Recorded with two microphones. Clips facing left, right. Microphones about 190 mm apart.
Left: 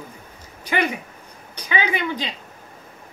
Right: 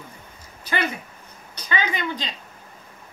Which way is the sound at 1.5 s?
10° left (ahead or behind).